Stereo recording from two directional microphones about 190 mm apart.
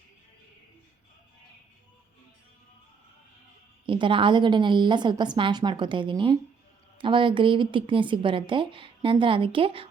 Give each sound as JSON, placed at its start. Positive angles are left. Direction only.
{"t": 3.8, "sound": "a woman's voice", "side_deg": -25}